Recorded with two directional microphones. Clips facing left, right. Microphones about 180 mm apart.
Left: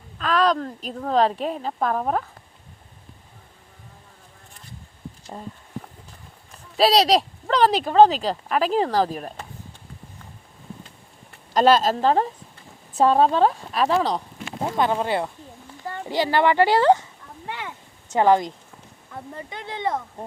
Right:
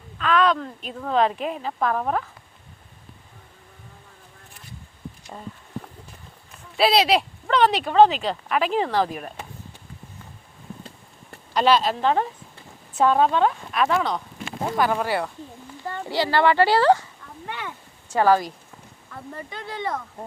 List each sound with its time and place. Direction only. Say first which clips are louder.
0.2 s speech: even; 35° left (ahead or behind)
6.7 s speech: left 2 dB; 35° left (ahead or behind)
11.5 s speech: left 2 dB; 45° left (ahead or behind)
14.8 s speech: left 1 dB; 20° left (ahead or behind)
18.1 s speech: left 1 dB; 20° left (ahead or behind)